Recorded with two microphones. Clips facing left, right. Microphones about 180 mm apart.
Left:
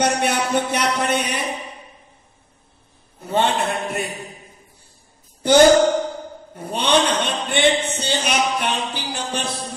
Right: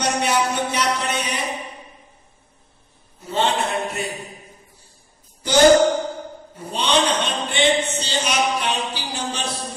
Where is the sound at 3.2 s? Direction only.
55° left (ahead or behind).